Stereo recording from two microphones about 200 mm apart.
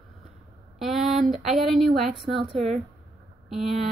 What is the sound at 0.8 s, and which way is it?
A woman's voice, centre (ahead or behind).